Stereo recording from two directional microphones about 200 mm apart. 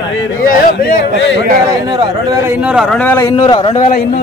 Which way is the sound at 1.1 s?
65° left (ahead or behind).